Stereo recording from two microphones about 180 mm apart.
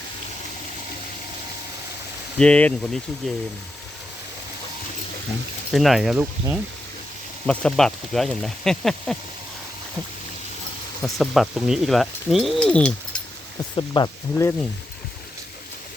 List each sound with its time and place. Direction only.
2.4 s speech: 5° left (ahead or behind)
5.7 s speech: centre (ahead or behind)
11.0 s speech: centre (ahead or behind)
13.7 s speech: 25° left (ahead or behind)